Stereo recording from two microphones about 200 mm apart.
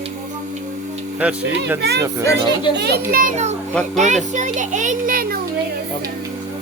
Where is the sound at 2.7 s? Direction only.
55° right (ahead or behind).